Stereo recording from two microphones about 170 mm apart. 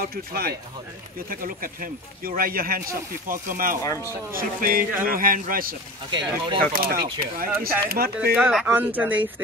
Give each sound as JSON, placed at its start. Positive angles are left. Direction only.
{"t": 0.0, "sound": "a man's voice", "side_deg": -65}
{"t": 6.1, "sound": "speech", "side_deg": -25}
{"t": 6.7, "sound": "a man's voice", "side_deg": -60}
{"t": 8.4, "sound": "speech", "side_deg": -5}